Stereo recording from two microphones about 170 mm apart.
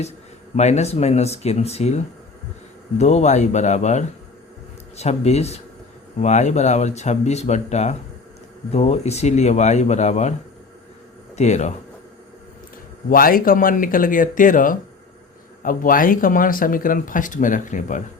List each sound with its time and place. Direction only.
0.5 s speech: 40° left (ahead or behind)
11.3 s speech: 40° left (ahead or behind)
13.1 s speech: 55° left (ahead or behind)